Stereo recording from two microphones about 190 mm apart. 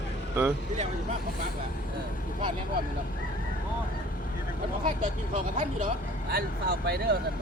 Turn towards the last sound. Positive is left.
turn(degrees=-60)  # may be behind; listen again after turning